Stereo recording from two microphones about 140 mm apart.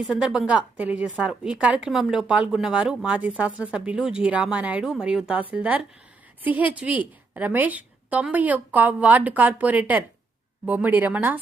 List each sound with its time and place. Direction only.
0.0 s speech: 5° right (ahead or behind)